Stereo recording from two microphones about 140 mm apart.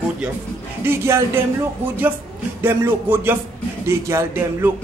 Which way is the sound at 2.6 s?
15° right (ahead or behind).